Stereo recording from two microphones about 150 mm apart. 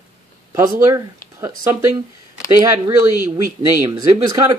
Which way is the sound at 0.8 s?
20° right (ahead or behind).